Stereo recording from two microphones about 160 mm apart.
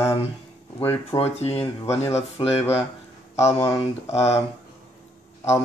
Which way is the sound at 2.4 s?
30° left (ahead or behind).